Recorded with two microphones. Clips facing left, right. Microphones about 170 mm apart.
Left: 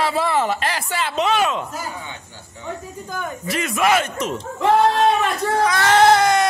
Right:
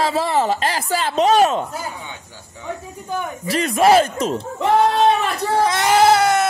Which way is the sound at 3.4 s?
35° right (ahead or behind).